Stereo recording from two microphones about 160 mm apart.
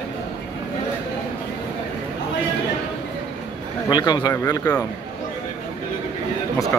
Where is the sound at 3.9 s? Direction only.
25° left (ahead or behind).